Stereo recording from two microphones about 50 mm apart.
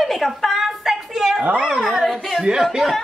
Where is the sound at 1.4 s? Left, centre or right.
Right.